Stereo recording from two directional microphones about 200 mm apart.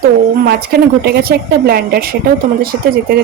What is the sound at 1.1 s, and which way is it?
A woman's voice, 50° right (ahead or behind).